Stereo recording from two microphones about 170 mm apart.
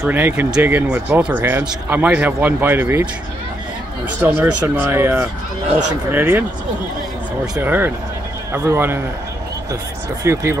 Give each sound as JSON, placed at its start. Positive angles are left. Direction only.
{"t": 0.0, "sound": "speech", "side_deg": -10}
{"t": 4.2, "sound": "speech", "side_deg": -15}
{"t": 7.5, "sound": "speech", "side_deg": -10}
{"t": 10.2, "sound": "speech", "side_deg": -15}